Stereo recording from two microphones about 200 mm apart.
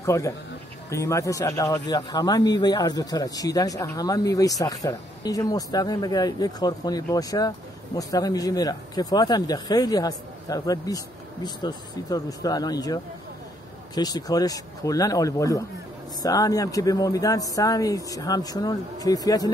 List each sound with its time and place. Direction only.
0.0 s speech: 15° left (ahead or behind)